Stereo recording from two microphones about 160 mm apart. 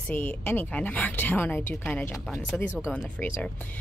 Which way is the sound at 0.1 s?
10° left (ahead or behind).